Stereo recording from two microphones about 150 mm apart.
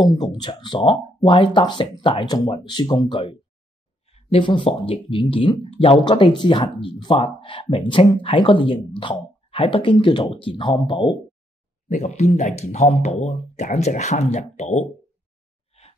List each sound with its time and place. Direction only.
0.1 s speech: 30° left (ahead or behind)
11.9 s speech: 50° left (ahead or behind)